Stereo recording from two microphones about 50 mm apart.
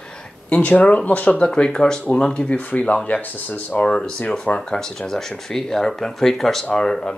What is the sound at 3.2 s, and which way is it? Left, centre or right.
Speech, left.